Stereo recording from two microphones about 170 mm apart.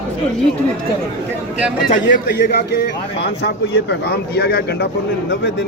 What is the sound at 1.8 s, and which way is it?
A man's voice, 60° left (ahead or behind).